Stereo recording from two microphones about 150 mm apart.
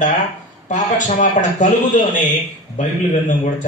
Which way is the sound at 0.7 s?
55° left (ahead or behind).